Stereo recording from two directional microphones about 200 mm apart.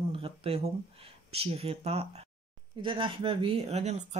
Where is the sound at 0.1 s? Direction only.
30° right (ahead or behind).